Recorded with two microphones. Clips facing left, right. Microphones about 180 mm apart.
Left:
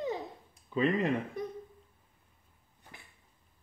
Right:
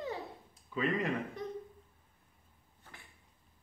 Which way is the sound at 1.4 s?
10° left (ahead or behind).